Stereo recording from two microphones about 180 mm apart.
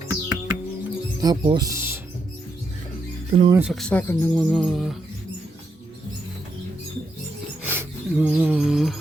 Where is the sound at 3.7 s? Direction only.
5° left (ahead or behind).